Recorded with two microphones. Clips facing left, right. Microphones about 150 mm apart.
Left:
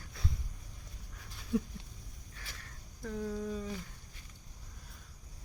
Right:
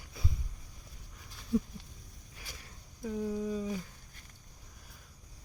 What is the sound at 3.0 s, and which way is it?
Speech, 5° right (ahead or behind).